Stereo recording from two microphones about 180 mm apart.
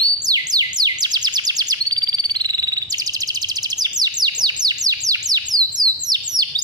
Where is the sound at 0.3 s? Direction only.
20° right (ahead or behind).